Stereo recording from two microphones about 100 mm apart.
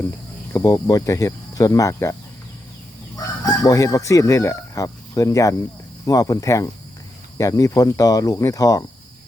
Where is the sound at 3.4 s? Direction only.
35° left (ahead or behind).